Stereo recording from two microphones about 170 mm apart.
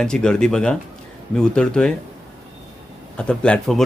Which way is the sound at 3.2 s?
5° left (ahead or behind).